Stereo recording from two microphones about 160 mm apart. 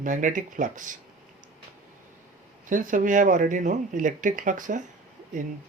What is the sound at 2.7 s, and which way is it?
Speech, 55° right (ahead or behind).